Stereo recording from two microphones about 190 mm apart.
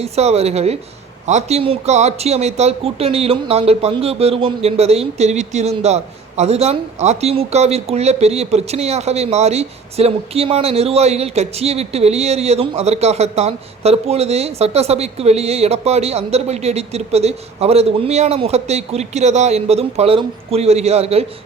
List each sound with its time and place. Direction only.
0.0 s speech: 35° right (ahead or behind)